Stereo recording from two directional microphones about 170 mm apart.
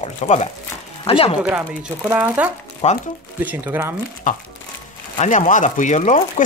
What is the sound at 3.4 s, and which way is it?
Speech, 15° right (ahead or behind).